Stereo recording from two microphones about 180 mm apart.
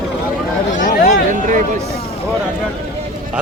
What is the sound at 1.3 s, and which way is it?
Speech, 45° right (ahead or behind).